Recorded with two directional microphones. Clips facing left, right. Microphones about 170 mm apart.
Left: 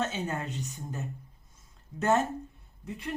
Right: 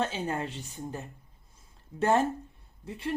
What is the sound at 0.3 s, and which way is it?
Speech, 30° right (ahead or behind).